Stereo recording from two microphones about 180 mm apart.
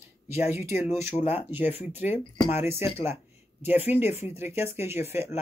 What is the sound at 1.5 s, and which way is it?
Speech, 10° right (ahead or behind).